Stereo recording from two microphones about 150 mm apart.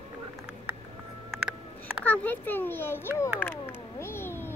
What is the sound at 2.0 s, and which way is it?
A child's voice, 10° left (ahead or behind).